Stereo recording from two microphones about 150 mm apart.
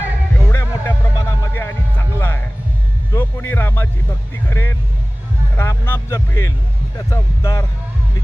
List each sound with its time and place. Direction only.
0.3 s music: 20° left (ahead or behind)
4.4 s speech: 15° left (ahead or behind)